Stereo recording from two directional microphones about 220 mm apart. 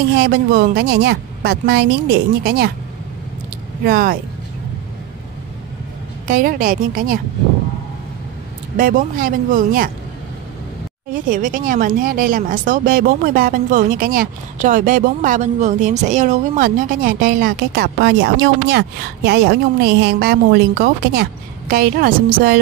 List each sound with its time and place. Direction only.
0.2 s speech: 45° right (ahead or behind)
3.8 s speech: 40° right (ahead or behind)
6.2 s speech: 40° right (ahead or behind)
8.7 s speech: 40° right (ahead or behind)
11.2 s speech: 35° right (ahead or behind)